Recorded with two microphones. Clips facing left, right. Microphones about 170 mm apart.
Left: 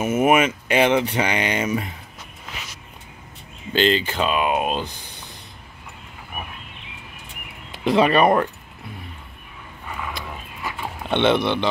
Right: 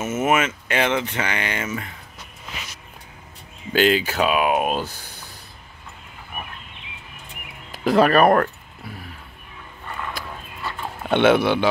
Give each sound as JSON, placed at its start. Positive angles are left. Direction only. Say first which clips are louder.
{"t": 0.0, "sound": "speech", "louder": "left 3 dB", "side_deg": 10}
{"t": 3.7, "sound": "speech", "louder": "right 1 dB", "side_deg": -10}
{"t": 7.7, "sound": "speech", "louder": "right 1 dB", "side_deg": 0}
{"t": 9.8, "sound": "a sound", "louder": "even", "side_deg": 5}
{"t": 10.6, "sound": "dog", "louder": "even", "side_deg": 10}
{"t": 11.1, "sound": "speech", "louder": "right 2 dB", "side_deg": -5}